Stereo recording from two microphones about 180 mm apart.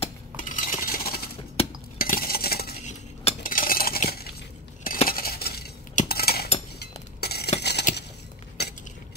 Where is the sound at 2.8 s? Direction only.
35° left (ahead or behind).